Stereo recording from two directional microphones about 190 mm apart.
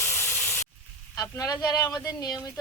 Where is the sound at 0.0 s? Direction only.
10° left (ahead or behind).